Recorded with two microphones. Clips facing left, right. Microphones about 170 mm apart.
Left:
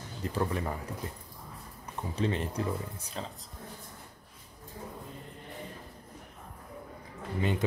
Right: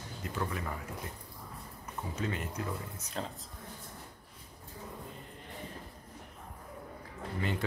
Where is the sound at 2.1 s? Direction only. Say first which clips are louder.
Left 6 dB; 30° left (ahead or behind).